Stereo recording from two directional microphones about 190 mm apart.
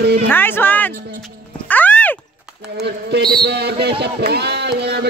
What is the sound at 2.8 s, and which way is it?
Speech, 60° right (ahead or behind).